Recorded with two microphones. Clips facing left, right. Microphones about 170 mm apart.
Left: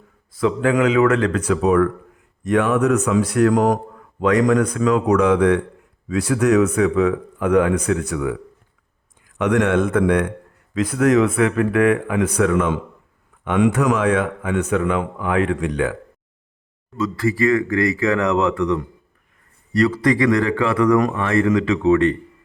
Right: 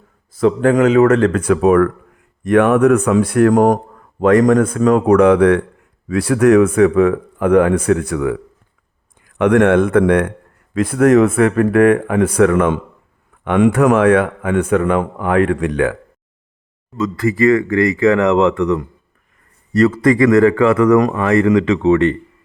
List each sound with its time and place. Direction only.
0.3 s a man's voice: 45° right (ahead or behind); by 16.0 s 60° right (ahead or behind)
17.0 s speech: 40° right (ahead or behind)
18.2 s speech: 90° right
20.0 s a man's voice: 50° right (ahead or behind)